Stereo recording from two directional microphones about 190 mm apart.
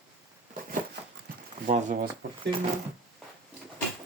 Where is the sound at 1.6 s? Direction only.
40° right (ahead or behind).